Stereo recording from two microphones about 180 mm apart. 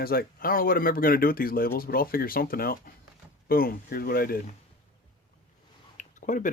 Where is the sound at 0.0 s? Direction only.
55° left (ahead or behind).